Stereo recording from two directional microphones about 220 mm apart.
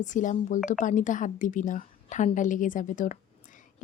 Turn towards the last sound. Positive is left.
turn(degrees=35)  # may be behind; listen again after turning